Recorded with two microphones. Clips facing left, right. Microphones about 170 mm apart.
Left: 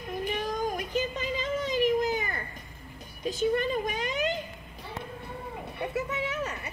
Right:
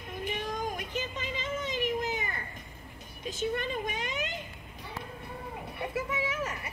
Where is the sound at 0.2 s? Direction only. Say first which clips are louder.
Left 3 dB; 35° left (ahead or behind).